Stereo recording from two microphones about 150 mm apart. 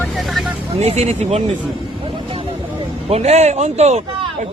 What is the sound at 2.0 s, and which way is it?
Vehicle, 35° right (ahead or behind).